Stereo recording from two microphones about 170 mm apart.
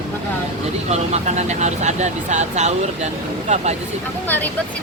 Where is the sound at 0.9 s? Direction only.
40° right (ahead or behind).